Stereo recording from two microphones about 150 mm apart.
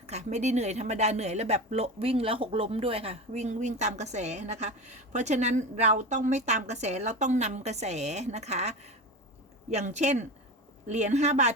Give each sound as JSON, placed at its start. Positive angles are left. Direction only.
{"t": 0.0, "sound": "speech", "side_deg": -50}